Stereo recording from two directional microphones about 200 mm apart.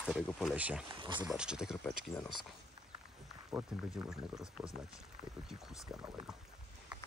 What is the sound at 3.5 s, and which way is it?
Speech, 5° right (ahead or behind).